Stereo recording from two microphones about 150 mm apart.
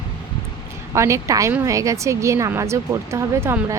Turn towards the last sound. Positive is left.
turn(degrees=-15)  # may be behind; listen again after turning